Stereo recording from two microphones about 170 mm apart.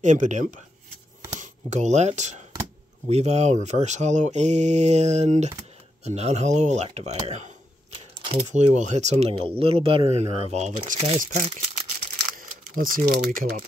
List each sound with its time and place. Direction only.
0.0 s speech: 45° right (ahead or behind)
12.4 s speech: 55° right (ahead or behind)